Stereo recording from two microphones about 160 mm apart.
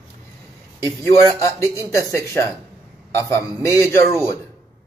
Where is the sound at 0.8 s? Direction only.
20° left (ahead or behind).